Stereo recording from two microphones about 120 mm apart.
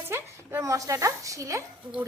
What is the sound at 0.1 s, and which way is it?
A woman's voice, 25° right (ahead or behind).